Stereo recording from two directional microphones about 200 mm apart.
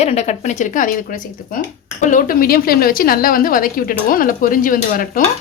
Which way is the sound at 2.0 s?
40° left (ahead or behind).